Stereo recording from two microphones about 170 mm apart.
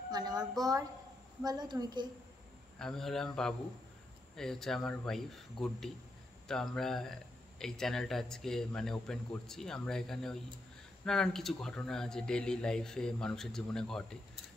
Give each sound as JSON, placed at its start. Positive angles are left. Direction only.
{"t": 0.1, "sound": "a woman's voice", "side_deg": -25}
{"t": 2.8, "sound": "speech", "side_deg": 0}